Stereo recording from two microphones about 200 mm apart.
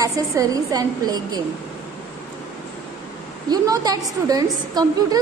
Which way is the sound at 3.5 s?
20° right (ahead or behind).